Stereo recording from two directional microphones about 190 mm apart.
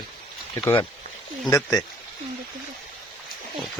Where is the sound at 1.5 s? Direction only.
15° left (ahead or behind).